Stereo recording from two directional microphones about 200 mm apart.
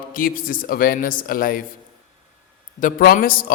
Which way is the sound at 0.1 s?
45° left (ahead or behind).